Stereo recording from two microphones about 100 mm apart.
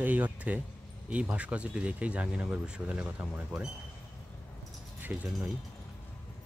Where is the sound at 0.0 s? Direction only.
15° right (ahead or behind).